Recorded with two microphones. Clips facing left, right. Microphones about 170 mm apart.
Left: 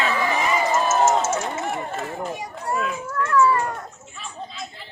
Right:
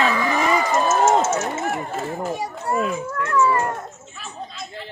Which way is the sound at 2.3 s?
30° right (ahead or behind).